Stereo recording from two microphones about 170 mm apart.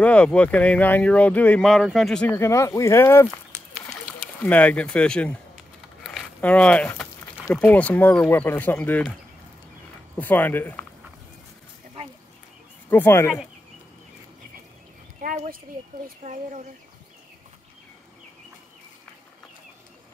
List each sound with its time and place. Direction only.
0.0 s speech: 5° left (ahead or behind)
2.3 s speech: 15° left (ahead or behind)
4.4 s speech: 10° left (ahead or behind)
6.0 s a sound: 5° left (ahead or behind)
7.5 s speech: 10° left (ahead or behind)
10.1 s speech: 10° left (ahead or behind)
12.9 s speech: 15° left (ahead or behind)
15.2 s a sound: 55° right (ahead or behind)
16.2 s speech: 40° right (ahead or behind)